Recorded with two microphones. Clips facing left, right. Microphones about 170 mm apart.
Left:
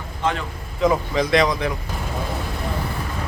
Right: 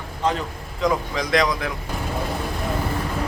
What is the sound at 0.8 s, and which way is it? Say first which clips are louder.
Speech: left 3 dB; centre (ahead or behind).